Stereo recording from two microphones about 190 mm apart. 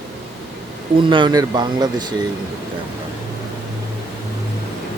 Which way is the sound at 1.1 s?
25° right (ahead or behind).